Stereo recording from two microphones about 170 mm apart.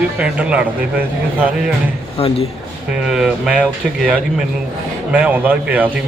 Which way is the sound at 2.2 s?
35° left (ahead or behind).